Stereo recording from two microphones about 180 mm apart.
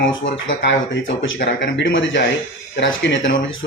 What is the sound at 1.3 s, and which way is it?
Speech, 75° left (ahead or behind).